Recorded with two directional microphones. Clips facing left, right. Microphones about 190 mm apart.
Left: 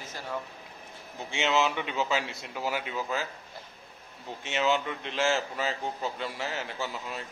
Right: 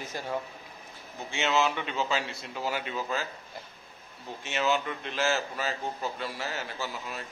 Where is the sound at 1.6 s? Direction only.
15° left (ahead or behind).